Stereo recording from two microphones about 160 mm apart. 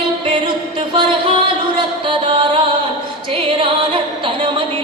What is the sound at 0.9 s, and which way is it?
A man's voice, 30° right (ahead or behind).